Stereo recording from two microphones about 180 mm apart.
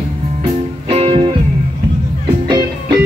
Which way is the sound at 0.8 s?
30° right (ahead or behind).